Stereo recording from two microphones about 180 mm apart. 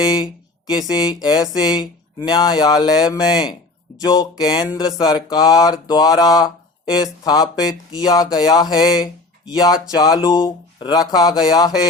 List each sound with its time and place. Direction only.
0.0 s speech: 25° left (ahead or behind)